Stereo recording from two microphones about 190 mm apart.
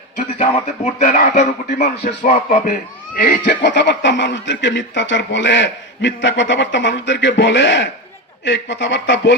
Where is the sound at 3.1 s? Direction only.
50° left (ahead or behind).